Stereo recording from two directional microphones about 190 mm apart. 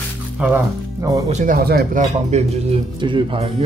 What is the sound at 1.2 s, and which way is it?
Speech, 35° right (ahead or behind).